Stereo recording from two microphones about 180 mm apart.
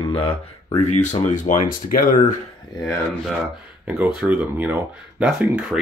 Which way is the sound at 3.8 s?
10° right (ahead or behind).